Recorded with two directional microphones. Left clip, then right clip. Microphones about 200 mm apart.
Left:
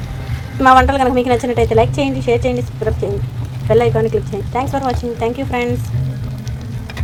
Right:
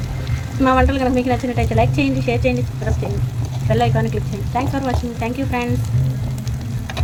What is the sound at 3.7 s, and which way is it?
Speech, 15° left (ahead or behind).